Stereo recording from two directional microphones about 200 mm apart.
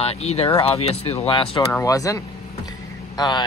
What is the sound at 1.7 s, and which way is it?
Speech, 15° left (ahead or behind).